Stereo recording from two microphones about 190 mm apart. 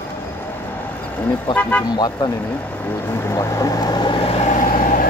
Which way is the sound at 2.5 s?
10° left (ahead or behind).